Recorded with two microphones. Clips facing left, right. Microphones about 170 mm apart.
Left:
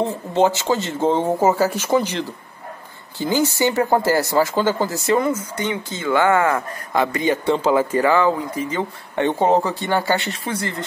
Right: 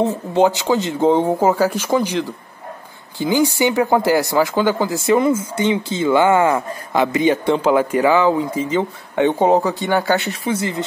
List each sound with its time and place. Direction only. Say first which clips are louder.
0.0 s speech: right 2 dB; 15° right (ahead or behind)
1.4 s speech: right 1 dB; 5° left (ahead or behind)
3.3 s speech: right 2 dB; 15° right (ahead or behind)
5.3 s speech: right 6 dB; 25° right (ahead or behind)